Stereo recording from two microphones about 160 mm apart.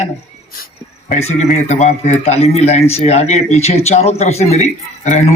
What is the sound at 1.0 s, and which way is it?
A man's voice, 40° left (ahead or behind).